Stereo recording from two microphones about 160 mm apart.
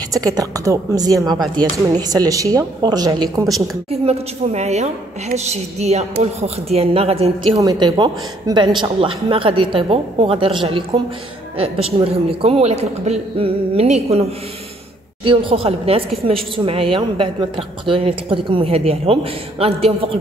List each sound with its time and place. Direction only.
0.1 s a woman's voice: 25° right (ahead or behind)
3.9 s a woman's voice: 40° right (ahead or behind)
7.5 s a woman's voice: 25° right (ahead or behind); by 14.2 s 40° right (ahead or behind)
15.2 s a woman's voice: 35° right (ahead or behind)